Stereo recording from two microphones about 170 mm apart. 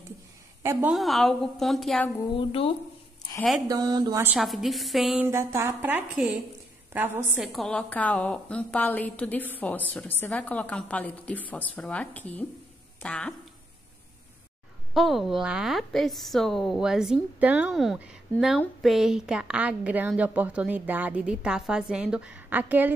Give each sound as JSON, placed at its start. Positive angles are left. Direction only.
{"t": 0.6, "sound": "a woman's voice", "side_deg": -15}
{"t": 0.9, "sound": "a woman's voice", "side_deg": 0}
{"t": 2.3, "sound": "speech", "side_deg": 35}
{"t": 3.6, "sound": "speech", "side_deg": -20}
{"t": 4.2, "sound": "a woman's voice", "side_deg": -5}
{"t": 5.2, "sound": "a woman's voice", "side_deg": -15}
{"t": 7.3, "sound": "a woman's voice", "side_deg": 0}
{"t": 15.0, "sound": "a woman's voice", "side_deg": 0}